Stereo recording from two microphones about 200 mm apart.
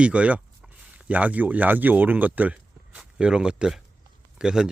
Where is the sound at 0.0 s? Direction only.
5° right (ahead or behind).